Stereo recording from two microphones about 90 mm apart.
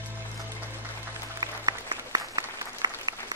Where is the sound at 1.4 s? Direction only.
45° right (ahead or behind).